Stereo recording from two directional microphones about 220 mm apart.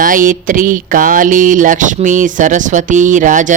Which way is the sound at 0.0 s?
40° right (ahead or behind).